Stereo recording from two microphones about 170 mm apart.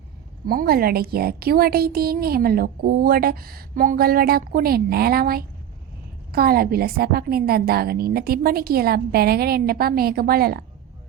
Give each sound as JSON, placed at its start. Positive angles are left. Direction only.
{"t": 0.4, "sound": "a woman's voice", "side_deg": -60}